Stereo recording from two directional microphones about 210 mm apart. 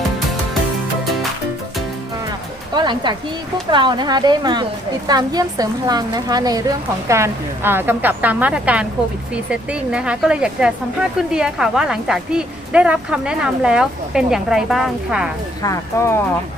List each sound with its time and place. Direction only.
2.7 s a woman's voice: 20° right (ahead or behind); by 15.3 s centre (ahead or behind)
15.6 s speech: 15° left (ahead or behind)